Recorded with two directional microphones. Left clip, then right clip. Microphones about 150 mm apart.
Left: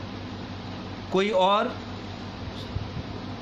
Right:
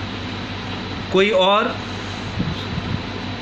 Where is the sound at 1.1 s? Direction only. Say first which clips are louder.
Right 6 dB; 35° left (ahead or behind).